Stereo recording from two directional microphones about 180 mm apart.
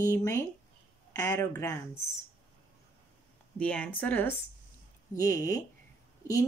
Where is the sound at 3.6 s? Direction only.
5° left (ahead or behind).